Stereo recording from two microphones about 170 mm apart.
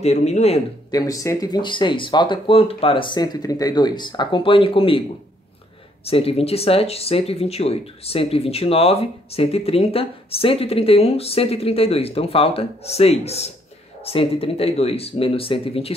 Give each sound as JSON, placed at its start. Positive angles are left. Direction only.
{"t": 0.0, "sound": "speech", "side_deg": 40}
{"t": 0.9, "sound": "speech", "side_deg": 20}
{"t": 6.0, "sound": "speech", "side_deg": 35}